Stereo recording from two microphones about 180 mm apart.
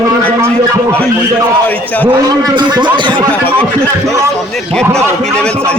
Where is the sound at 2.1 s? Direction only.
25° right (ahead or behind).